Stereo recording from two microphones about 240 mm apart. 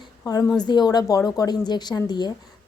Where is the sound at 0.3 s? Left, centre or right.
Centre.